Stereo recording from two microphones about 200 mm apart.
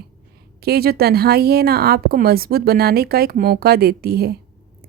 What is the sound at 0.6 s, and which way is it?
A woman's voice, 50° right (ahead or behind).